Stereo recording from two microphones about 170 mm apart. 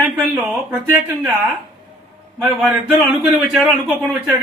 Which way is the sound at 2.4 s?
Centre (ahead or behind).